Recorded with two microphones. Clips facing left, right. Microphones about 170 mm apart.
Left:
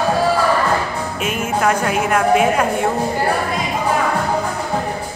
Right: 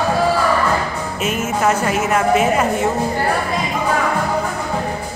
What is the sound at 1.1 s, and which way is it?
Speech, 55° left (ahead or behind).